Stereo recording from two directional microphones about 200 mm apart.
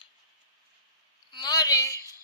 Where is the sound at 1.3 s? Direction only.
20° left (ahead or behind).